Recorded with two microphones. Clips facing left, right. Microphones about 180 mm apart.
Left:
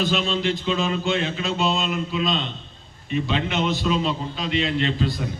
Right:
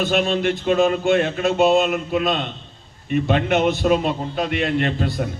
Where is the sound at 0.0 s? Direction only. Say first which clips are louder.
Right 4 dB; 55° right (ahead or behind).